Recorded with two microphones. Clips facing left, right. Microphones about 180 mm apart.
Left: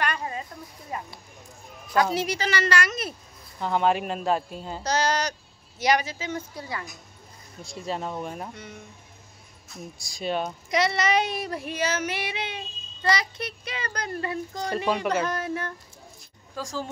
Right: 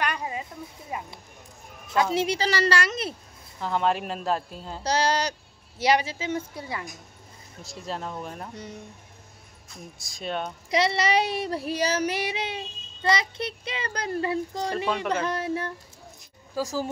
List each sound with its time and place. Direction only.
0.0 s a sound: 15° right (ahead or behind)
0.9 s speech: 10° right (ahead or behind)
2.1 s speech: 30° right (ahead or behind)
3.6 s a woman's voice: centre (ahead or behind)
4.8 s speech: 30° right (ahead or behind)
7.6 s a woman's voice: centre (ahead or behind)
9.9 s a woman's voice: centre (ahead or behind)
10.7 s child singing: 30° right (ahead or behind)
13.0 s speech: 25° right (ahead or behind)
16.5 s speech: 5° right (ahead or behind)